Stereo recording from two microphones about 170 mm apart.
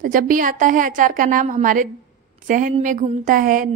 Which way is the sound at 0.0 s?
55° right (ahead or behind).